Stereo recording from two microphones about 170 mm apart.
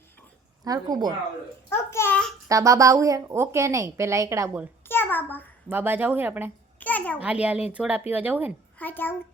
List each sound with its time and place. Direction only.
0.6 s speech: 20° right (ahead or behind)
1.7 s a child's voice: 15° left (ahead or behind)
2.5 s speech: 20° right (ahead or behind)
4.9 s a sound: 10° left (ahead or behind)
5.6 s speech: 10° right (ahead or behind)
6.7 s a sound: 10° left (ahead or behind)
7.2 s speech: 10° right (ahead or behind)
8.8 s a child's voice: 10° left (ahead or behind)